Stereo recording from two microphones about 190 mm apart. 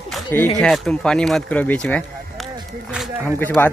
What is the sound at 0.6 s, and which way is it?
Speech, 5° left (ahead or behind).